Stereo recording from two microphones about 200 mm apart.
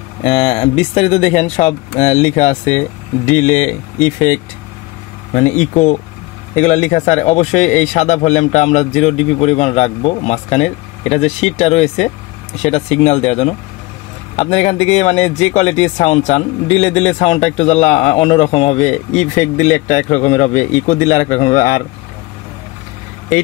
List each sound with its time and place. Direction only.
0.2 s speech: 30° left (ahead or behind)